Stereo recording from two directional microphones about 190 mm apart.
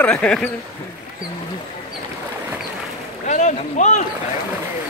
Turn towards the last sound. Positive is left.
turn(degrees=40)  # may be behind; listen again after turning